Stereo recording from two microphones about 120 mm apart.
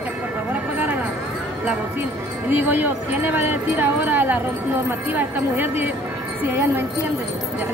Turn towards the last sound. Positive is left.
turn(degrees=-20)  # may be behind; listen again after turning